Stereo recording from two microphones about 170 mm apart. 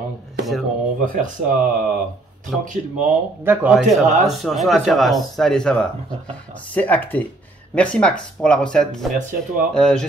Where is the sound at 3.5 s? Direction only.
5° right (ahead or behind).